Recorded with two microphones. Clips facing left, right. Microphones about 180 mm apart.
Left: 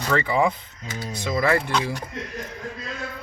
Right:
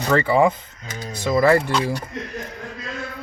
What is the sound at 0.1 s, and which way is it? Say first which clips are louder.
Speech: right 5 dB; 40° right (ahead or behind).